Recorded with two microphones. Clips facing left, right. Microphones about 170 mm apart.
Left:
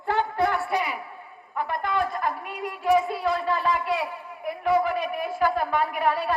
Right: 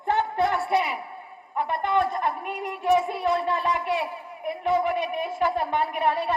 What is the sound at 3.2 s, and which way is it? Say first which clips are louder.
A woman's voice: right 1 dB; 20° right (ahead or behind).